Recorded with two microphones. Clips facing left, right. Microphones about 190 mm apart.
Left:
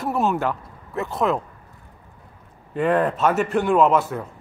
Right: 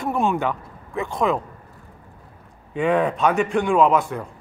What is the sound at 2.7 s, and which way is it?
Speech, centre (ahead or behind).